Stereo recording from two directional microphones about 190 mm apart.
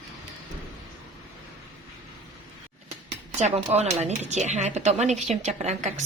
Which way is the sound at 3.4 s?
35° right (ahead or behind).